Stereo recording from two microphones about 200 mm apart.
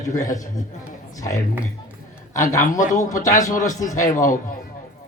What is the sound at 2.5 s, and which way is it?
A man's voice, 40° left (ahead or behind).